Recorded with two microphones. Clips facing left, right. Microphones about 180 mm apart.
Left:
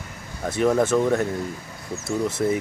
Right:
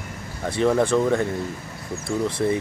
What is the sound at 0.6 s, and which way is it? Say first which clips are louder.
Speech: even; 5° left (ahead or behind).